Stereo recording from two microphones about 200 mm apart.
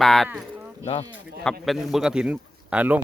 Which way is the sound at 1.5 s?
Centre (ahead or behind).